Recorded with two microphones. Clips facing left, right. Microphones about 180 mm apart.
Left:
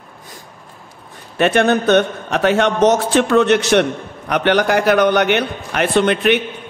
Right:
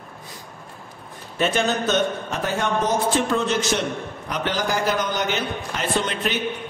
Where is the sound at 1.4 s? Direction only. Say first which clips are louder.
Left 7 dB; 65° left (ahead or behind).